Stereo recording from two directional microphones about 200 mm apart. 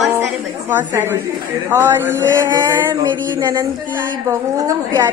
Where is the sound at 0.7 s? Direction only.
10° right (ahead or behind).